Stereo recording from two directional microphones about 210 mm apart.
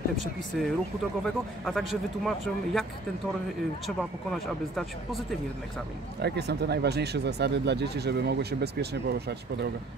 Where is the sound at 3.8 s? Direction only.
Centre (ahead or behind).